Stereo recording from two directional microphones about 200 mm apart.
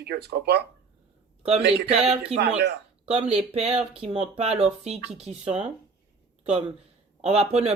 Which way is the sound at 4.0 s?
30° right (ahead or behind).